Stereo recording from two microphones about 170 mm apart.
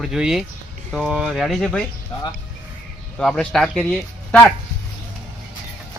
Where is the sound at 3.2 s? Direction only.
5° left (ahead or behind).